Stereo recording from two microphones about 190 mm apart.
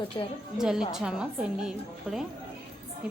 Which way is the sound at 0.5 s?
5° right (ahead or behind).